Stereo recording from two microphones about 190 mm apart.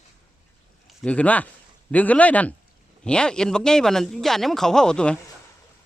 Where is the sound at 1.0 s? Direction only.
5° left (ahead or behind).